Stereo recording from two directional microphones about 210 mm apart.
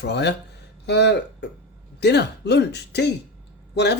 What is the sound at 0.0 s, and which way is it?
Speech, 55° left (ahead or behind).